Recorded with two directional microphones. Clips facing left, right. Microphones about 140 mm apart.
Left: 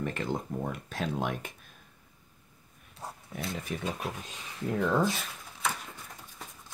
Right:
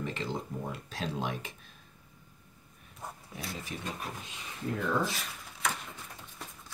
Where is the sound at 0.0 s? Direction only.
55° left (ahead or behind).